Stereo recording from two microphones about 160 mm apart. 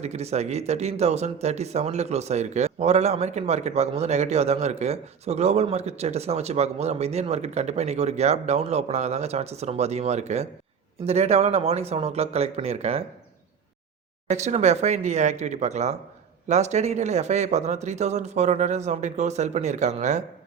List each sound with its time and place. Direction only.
0.0 s speech: 45° right (ahead or behind)
14.3 s speech: 45° right (ahead or behind)